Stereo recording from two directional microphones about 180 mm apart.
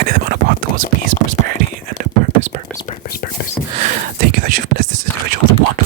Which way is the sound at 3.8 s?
45° right (ahead or behind).